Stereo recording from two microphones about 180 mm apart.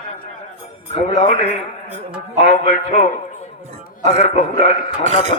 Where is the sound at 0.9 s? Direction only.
35° left (ahead or behind).